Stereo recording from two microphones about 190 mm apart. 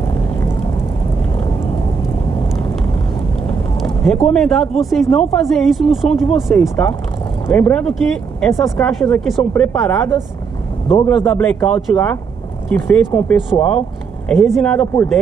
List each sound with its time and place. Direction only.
3.4 s speech: 5° left (ahead or behind)
10.9 s a man's voice: 25° left (ahead or behind)
11.2 s speech: 10° left (ahead or behind)